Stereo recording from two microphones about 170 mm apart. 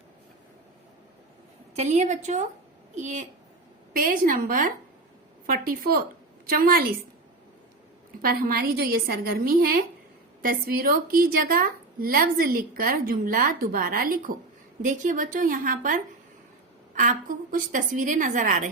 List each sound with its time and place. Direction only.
1.7 s a woman's voice: 40° right (ahead or behind)
3.9 s a woman's voice: 55° right (ahead or behind)
8.2 s a woman's voice: 60° right (ahead or behind)